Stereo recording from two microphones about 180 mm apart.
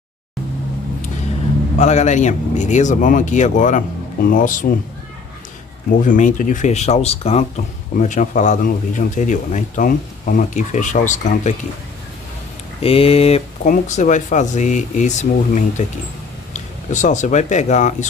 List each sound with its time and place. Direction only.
1.8 s speech: 40° left (ahead or behind)
5.9 s speech: 45° left (ahead or behind)
12.8 s speech: 35° left (ahead or behind)